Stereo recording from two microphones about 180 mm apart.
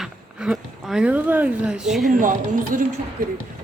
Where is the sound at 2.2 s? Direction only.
45° right (ahead or behind).